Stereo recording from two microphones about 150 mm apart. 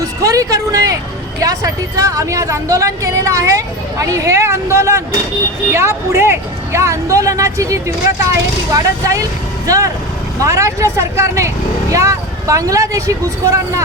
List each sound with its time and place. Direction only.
0.0 s a woman's voice: 25° right (ahead or behind)